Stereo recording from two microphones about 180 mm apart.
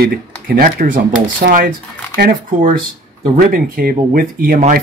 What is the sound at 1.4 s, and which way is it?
Speech, 60° right (ahead or behind).